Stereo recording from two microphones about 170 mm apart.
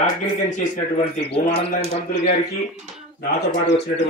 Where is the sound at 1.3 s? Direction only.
40° left (ahead or behind).